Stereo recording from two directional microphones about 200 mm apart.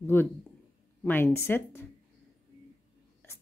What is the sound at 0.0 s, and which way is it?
Speech, 10° left (ahead or behind).